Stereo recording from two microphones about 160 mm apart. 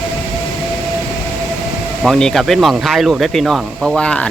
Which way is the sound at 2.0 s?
Centre (ahead or behind).